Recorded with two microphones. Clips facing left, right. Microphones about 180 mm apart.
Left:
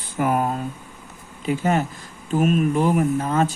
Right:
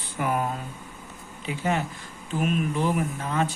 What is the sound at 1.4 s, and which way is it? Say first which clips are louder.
Speech: left 6 dB; 45° left (ahead or behind).